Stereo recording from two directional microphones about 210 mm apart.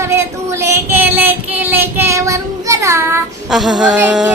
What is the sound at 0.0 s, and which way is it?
Child singing, 15° right (ahead or behind).